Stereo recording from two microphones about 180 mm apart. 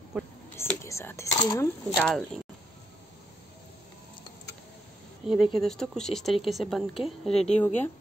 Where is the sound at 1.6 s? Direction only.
5° left (ahead or behind).